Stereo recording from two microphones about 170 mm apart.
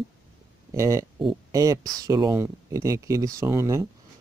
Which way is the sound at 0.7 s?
15° right (ahead or behind).